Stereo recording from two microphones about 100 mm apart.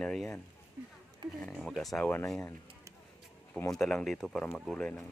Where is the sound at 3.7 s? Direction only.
5° left (ahead or behind).